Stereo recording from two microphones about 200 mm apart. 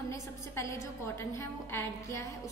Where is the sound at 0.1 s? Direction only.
15° left (ahead or behind).